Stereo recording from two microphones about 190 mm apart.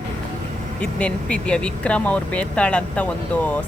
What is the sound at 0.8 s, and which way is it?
Speech, 5° left (ahead or behind).